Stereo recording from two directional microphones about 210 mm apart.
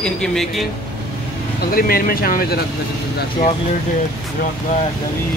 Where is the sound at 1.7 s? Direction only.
45° left (ahead or behind).